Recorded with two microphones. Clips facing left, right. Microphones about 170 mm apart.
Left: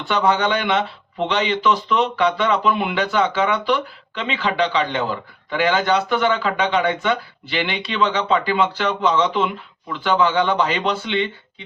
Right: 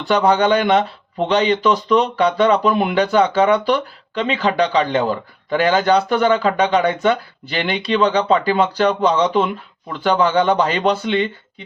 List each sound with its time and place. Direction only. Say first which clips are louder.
0.0 s speech: right 4 dB; 35° right (ahead or behind)